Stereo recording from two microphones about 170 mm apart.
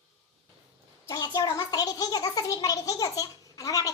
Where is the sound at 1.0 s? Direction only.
20° left (ahead or behind).